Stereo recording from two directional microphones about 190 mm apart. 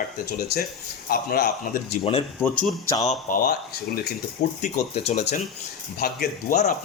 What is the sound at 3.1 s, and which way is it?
Speech, 45° left (ahead or behind).